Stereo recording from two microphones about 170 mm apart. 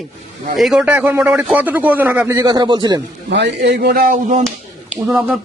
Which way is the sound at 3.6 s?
80° right.